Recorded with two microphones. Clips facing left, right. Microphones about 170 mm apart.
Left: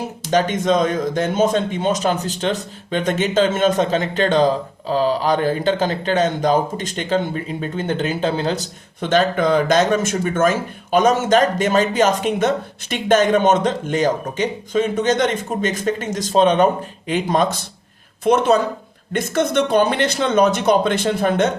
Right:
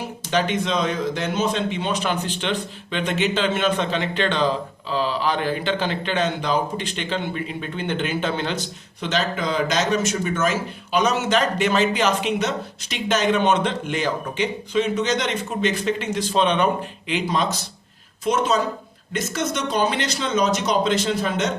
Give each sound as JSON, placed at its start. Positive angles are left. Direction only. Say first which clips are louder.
{"t": 0.3, "sound": "speech", "louder": "left 5 dB", "side_deg": 45}